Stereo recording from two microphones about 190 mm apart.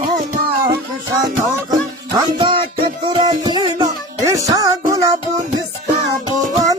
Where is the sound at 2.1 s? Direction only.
25° right (ahead or behind).